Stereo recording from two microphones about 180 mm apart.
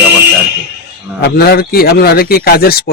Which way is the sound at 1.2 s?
65° left (ahead or behind).